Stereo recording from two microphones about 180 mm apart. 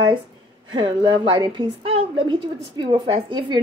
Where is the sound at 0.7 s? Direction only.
30° right (ahead or behind).